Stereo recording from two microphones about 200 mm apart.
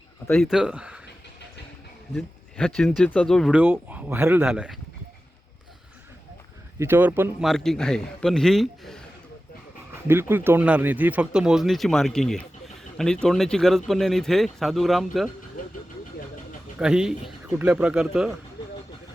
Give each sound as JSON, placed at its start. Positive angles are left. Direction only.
{"t": 0.3, "sound": "speech", "side_deg": 0}
{"t": 2.1, "sound": "speech", "side_deg": 5}
{"t": 6.7, "sound": "speech", "side_deg": -10}
{"t": 7.4, "sound": "speech", "side_deg": 0}
{"t": 10.1, "sound": "speech", "side_deg": -10}
{"t": 15.6, "sound": "vehicle", "side_deg": 45}
{"t": 16.7, "sound": "speech", "side_deg": -5}